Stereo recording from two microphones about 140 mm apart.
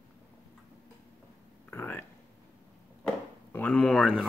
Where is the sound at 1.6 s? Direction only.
15° left (ahead or behind).